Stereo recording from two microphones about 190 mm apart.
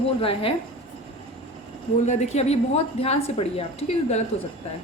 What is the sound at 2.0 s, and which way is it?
A woman's voice, 40° left (ahead or behind).